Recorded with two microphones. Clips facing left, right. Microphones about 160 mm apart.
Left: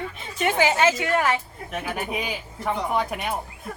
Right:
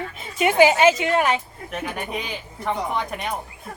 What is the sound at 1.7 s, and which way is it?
A woman's voice, 5° left (ahead or behind).